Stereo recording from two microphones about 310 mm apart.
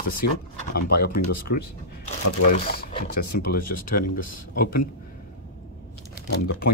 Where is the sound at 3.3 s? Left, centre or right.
Left.